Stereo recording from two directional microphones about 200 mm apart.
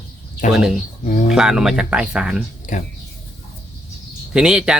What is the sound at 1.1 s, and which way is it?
Speech, 40° left (ahead or behind).